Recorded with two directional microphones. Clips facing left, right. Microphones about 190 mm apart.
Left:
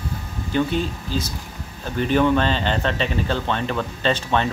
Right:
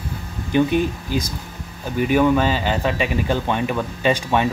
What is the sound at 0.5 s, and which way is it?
Speech, 15° right (ahead or behind).